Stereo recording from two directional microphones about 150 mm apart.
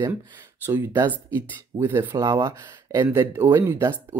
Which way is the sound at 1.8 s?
15° right (ahead or behind).